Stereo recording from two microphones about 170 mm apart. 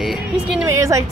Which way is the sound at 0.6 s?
15° right (ahead or behind).